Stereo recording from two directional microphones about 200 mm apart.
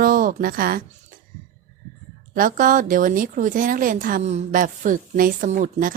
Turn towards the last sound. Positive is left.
turn(degrees=-40)  # may be behind; listen again after turning